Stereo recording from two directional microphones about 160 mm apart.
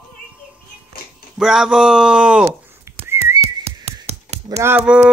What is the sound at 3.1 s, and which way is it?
Whistling, 15° right (ahead or behind).